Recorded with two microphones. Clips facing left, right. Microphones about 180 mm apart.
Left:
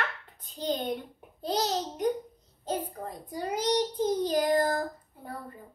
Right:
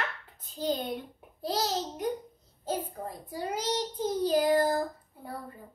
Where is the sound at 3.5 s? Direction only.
15° left (ahead or behind).